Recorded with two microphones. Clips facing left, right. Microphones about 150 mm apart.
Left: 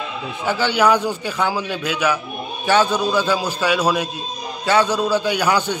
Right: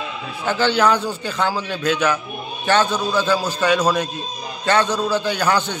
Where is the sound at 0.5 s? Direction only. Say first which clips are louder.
Even; 10° left (ahead or behind).